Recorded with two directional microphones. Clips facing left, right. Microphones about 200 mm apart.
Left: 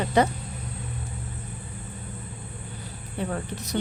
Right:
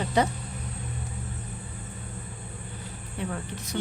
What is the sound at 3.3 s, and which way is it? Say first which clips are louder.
Speech: left 4 dB; 40° left (ahead or behind).